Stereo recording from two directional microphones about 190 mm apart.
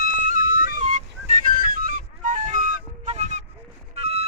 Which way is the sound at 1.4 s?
50° right (ahead or behind).